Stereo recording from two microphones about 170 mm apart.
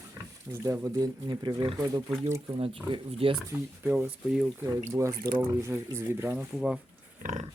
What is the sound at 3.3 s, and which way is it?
Speech, 5° right (ahead or behind).